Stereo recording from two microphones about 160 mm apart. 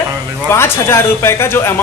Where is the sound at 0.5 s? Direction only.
15° left (ahead or behind).